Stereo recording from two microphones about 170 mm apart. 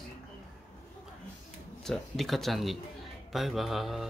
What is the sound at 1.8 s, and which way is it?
Speech, centre (ahead or behind).